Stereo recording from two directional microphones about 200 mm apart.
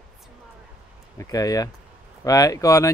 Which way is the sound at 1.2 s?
20° left (ahead or behind).